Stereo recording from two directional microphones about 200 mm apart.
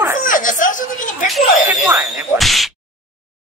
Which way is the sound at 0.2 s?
40° left (ahead or behind).